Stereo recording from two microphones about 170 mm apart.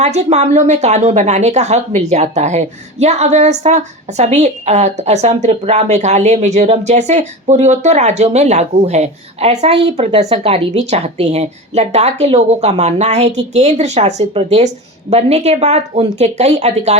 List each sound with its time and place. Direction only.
0.0 s a woman's voice: 40° right (ahead or behind)